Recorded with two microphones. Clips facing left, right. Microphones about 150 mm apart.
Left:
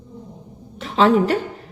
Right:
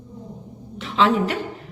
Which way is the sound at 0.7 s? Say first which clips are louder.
Left 4 dB; 40° left (ahead or behind).